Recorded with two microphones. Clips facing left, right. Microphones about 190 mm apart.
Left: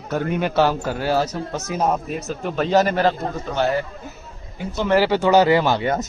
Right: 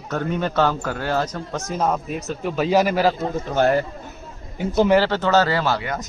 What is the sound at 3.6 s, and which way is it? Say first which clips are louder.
Speech: right 3 dB; 45° right (ahead or behind).